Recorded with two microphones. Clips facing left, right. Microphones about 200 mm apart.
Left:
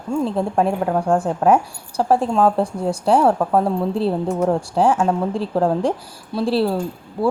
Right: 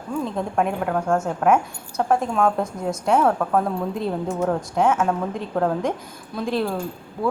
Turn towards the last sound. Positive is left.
turn(degrees=35)  # may be behind; listen again after turning